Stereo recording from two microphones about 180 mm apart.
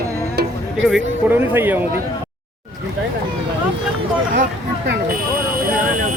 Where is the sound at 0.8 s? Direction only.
5° right (ahead or behind).